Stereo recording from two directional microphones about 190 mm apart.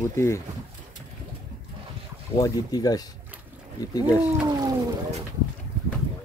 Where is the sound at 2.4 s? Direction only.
20° left (ahead or behind).